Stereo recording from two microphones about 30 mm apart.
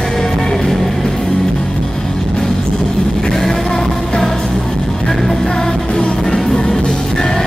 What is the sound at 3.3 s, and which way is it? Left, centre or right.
Music, centre.